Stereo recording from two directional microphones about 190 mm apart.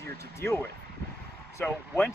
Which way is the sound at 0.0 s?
10° left (ahead or behind).